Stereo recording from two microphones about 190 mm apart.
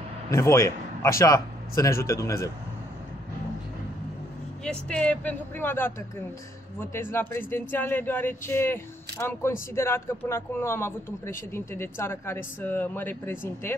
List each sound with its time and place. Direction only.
0.3 s speech: 15° left (ahead or behind)
4.6 s speech: 5° left (ahead or behind)